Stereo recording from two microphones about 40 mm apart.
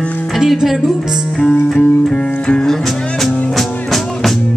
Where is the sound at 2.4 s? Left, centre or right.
Left.